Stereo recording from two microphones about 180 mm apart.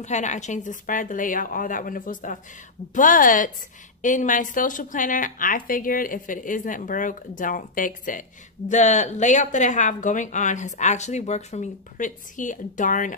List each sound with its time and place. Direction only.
0.0 s a woman's voice: 40° left (ahead or behind)